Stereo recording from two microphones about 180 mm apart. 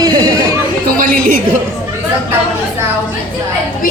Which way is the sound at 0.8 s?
50° right (ahead or behind).